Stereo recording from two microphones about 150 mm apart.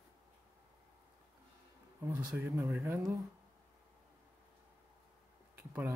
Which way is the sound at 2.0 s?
20° right (ahead or behind).